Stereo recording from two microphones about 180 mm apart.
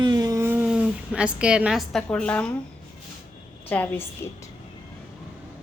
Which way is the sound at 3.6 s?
10° left (ahead or behind).